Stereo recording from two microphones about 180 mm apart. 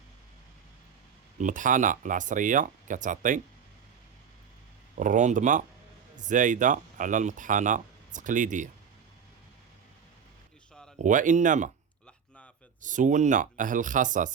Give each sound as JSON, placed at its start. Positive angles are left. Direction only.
{"t": 1.4, "sound": "speech", "side_deg": -45}
{"t": 4.9, "sound": "speech", "side_deg": -45}
{"t": 10.9, "sound": "speech", "side_deg": -45}
{"t": 12.8, "sound": "speech", "side_deg": -45}